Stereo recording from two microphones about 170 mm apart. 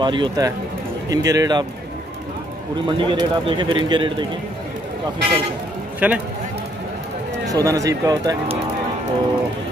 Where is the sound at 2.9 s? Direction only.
30° right (ahead or behind).